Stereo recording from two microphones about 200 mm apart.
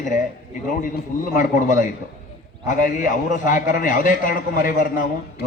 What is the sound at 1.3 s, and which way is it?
A man's voice, 40° left (ahead or behind).